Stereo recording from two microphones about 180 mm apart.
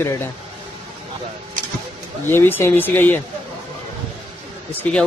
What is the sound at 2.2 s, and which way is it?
Speech, 10° left (ahead or behind).